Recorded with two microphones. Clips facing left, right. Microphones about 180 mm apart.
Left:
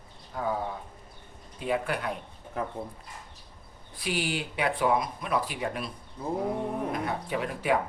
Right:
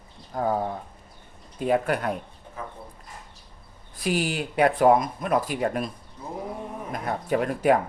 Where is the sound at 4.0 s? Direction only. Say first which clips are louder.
Right 5 dB; 45° right (ahead or behind).